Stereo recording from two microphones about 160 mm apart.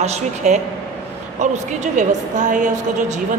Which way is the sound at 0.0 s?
45° right (ahead or behind).